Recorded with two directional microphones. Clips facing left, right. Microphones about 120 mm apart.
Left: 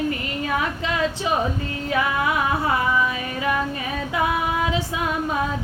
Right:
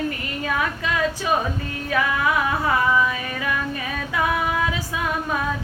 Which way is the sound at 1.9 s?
25° left (ahead or behind).